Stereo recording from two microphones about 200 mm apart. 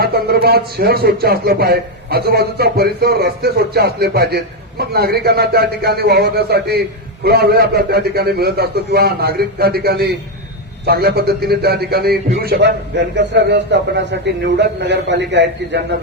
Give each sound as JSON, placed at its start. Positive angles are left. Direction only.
{"t": 0.0, "sound": "a man's voice", "side_deg": -50}